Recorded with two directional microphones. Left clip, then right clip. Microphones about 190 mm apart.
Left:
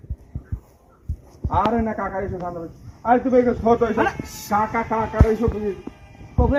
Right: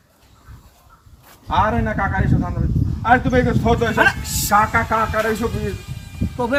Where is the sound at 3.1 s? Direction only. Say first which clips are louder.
Right 1 dB; 35° right (ahead or behind).